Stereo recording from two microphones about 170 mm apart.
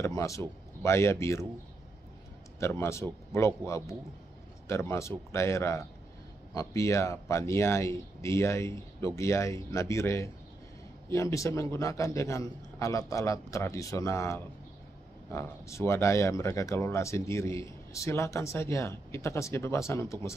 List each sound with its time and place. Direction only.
0.0 s speech: 20° left (ahead or behind)
2.6 s speech: 15° left (ahead or behind)